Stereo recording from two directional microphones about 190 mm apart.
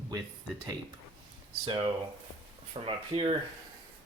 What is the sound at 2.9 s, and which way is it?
Speech, 30° right (ahead or behind).